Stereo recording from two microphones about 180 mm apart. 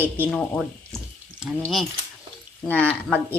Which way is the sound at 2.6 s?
10° left (ahead or behind).